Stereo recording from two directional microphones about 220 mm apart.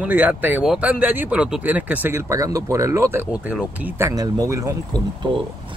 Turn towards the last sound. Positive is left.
turn(degrees=-15)  # may be behind; listen again after turning